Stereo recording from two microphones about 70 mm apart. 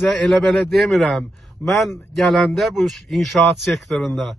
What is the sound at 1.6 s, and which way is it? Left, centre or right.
Speech, left.